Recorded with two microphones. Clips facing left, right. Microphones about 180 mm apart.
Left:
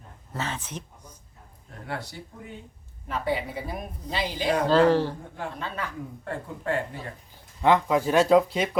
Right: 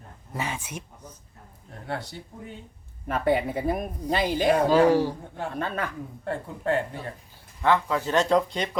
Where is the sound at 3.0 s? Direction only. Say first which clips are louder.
Right 5 dB; 55° right (ahead or behind).